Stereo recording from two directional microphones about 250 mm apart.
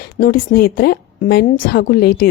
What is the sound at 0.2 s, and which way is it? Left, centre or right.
A woman's voice, left.